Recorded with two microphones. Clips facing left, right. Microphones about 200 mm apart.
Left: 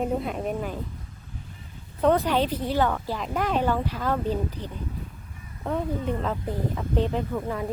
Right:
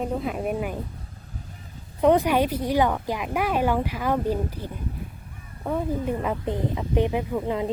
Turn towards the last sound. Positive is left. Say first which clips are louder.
# right 3 dB
turn(degrees=-15)  # may be behind; listen again after turning